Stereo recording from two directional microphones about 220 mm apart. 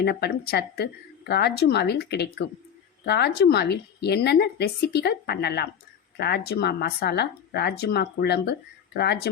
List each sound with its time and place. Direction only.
0.0 s speech: 45° left (ahead or behind)